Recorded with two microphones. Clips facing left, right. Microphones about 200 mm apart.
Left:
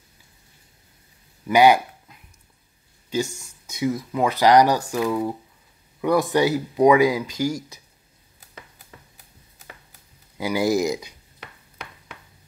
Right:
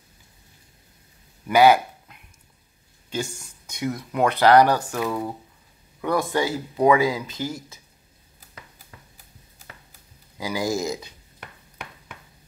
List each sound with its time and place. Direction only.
1.5 s speech: 15° left (ahead or behind)
3.6 s speech: 5° left (ahead or behind)
5.9 s speech: 15° left (ahead or behind)
10.3 s speech: 20° left (ahead or behind)